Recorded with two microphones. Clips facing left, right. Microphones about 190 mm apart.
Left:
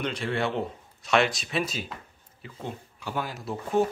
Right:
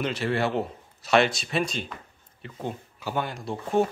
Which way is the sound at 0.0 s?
5° right (ahead or behind).